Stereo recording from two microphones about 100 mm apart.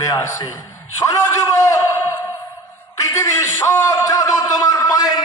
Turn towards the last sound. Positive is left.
turn(degrees=40)  # may be behind; listen again after turning